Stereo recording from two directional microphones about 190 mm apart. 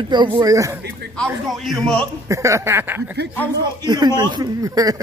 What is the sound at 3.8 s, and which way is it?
Speech, 20° right (ahead or behind).